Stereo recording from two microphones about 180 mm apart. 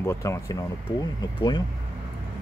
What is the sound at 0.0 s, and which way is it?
Speech, 15° left (ahead or behind).